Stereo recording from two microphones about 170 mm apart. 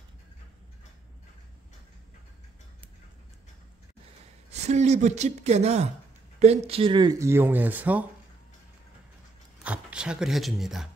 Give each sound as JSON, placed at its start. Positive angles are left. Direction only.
{"t": 4.5, "sound": "speech", "side_deg": -40}
{"t": 9.6, "sound": "speech", "side_deg": -5}